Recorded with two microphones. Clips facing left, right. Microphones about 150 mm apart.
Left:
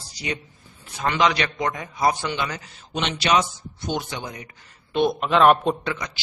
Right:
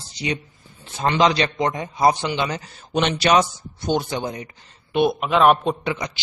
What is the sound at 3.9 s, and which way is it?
Speech, 30° right (ahead or behind).